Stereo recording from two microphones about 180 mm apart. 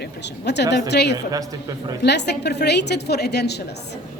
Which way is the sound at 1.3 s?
20° right (ahead or behind).